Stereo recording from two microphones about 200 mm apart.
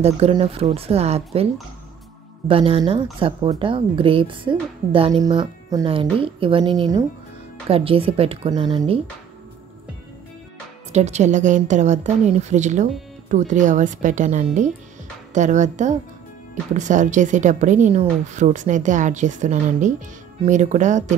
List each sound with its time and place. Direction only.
0.0 s a woman's voice: 30° right (ahead or behind)
10.9 s a woman's voice: 35° right (ahead or behind)